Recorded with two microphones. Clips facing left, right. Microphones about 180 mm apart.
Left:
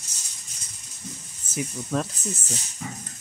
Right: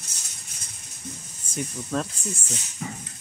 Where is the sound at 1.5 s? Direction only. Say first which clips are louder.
Left 1 dB; 5° left (ahead or behind).